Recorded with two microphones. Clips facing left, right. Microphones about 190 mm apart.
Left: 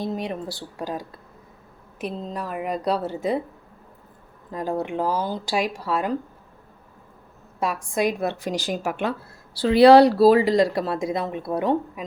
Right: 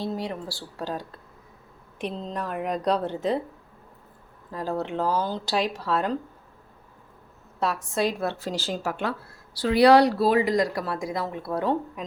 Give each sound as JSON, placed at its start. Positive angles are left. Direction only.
{"t": 0.0, "sound": "a woman's voice", "side_deg": 20}
{"t": 4.5, "sound": "speech", "side_deg": 15}
{"t": 7.6, "sound": "speech", "side_deg": 10}
{"t": 9.6, "sound": "speech", "side_deg": 30}